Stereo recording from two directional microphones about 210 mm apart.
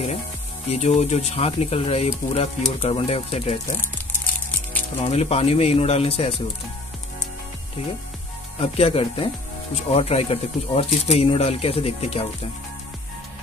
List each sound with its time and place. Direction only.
0.7 s speech: 30° left (ahead or behind)
5.0 s speech: 30° left (ahead or behind)
8.5 s speech: 30° left (ahead or behind)